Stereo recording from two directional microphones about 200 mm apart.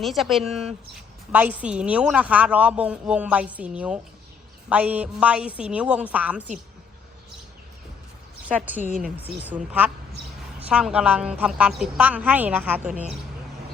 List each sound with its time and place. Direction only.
0.0 s speech: centre (ahead or behind)
8.4 s speech: 10° right (ahead or behind)
8.9 s speech: 40° right (ahead or behind)
9.4 s speech: 10° right (ahead or behind)